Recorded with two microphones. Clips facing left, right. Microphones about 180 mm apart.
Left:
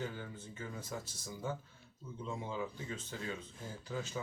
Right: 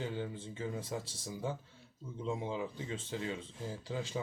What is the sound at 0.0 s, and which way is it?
Speech, 25° right (ahead or behind).